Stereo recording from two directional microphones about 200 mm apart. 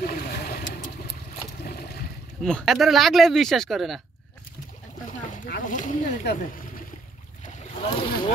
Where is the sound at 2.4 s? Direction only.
Centre (ahead or behind).